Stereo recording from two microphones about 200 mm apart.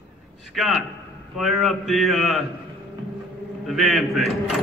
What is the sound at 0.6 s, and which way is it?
Speech, centre (ahead or behind).